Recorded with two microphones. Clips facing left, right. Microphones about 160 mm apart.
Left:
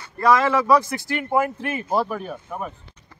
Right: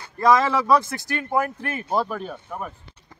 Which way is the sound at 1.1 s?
15° left (ahead or behind).